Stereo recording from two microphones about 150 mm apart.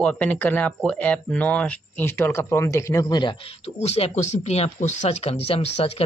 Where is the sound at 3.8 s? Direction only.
50° left (ahead or behind).